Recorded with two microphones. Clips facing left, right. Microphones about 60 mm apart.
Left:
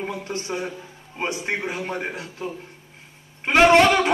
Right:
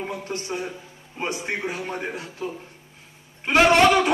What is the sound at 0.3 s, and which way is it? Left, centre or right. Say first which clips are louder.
Speech: left 1 dB; left.